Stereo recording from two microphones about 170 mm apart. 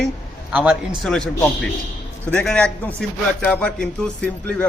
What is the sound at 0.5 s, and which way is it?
Speech, 5° right (ahead or behind).